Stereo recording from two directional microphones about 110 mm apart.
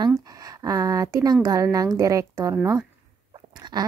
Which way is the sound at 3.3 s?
45° right (ahead or behind).